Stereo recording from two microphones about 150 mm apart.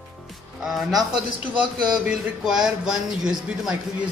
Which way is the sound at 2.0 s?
5° right (ahead or behind).